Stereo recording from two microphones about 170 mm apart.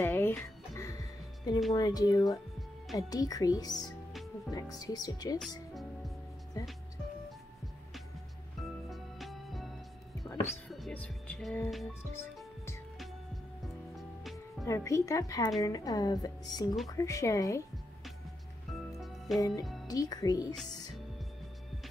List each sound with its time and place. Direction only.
0.0 s music: 15° left (ahead or behind)
1.7 s a woman's voice: 20° left (ahead or behind)
6.5 s a woman's voice: 20° left (ahead or behind)
8.8 s music: centre (ahead or behind)
10.5 s speech: centre (ahead or behind)
14.6 s a woman's voice: 20° left (ahead or behind)
18.9 s music: centre (ahead or behind)
19.9 s a woman's voice: 20° left (ahead or behind)